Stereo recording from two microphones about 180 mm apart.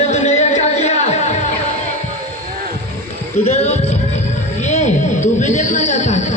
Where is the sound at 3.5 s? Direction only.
40° left (ahead or behind).